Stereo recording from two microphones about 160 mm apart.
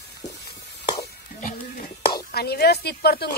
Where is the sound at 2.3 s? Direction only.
85° left.